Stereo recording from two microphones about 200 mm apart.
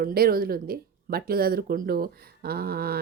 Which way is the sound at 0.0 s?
50° right (ahead or behind).